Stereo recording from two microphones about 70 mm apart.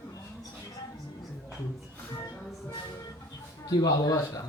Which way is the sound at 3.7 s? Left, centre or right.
Left.